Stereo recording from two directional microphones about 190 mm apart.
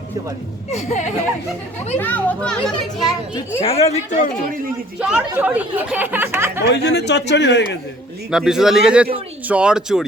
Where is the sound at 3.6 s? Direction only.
30° left (ahead or behind).